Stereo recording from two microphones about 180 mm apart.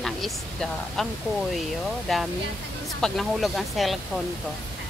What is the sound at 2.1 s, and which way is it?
Speech, centre (ahead or behind).